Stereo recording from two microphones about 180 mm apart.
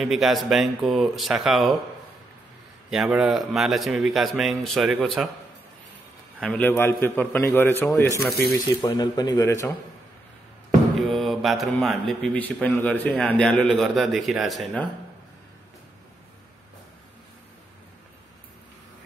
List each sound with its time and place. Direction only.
0.0 s speech: centre (ahead or behind)
2.9 s speech: centre (ahead or behind)
6.4 s a man's voice: 5° left (ahead or behind)
11.0 s speech: centre (ahead or behind)